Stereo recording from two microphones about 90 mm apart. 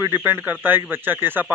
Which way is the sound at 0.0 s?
25° right (ahead or behind).